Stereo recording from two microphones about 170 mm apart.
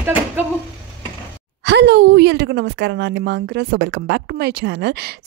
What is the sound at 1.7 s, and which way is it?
A woman's voice, 90° right.